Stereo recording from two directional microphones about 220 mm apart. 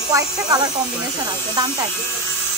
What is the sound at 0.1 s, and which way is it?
Speech, 15° right (ahead or behind).